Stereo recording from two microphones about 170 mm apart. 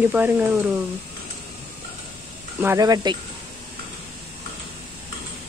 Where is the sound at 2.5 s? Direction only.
20° right (ahead or behind).